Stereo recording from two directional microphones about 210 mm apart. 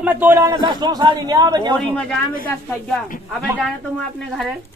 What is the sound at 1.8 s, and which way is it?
Speech, 5° left (ahead or behind).